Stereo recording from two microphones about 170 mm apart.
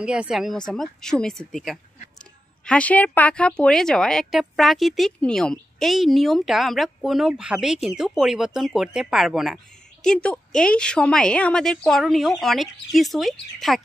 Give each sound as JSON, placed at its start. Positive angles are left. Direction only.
{"t": 0.0, "sound": "a woman's voice", "side_deg": -5}